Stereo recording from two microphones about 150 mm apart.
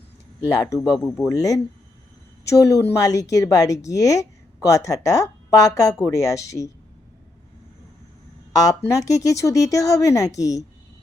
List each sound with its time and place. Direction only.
0.4 s speech: 20° left (ahead or behind)
8.6 s speech: 20° left (ahead or behind)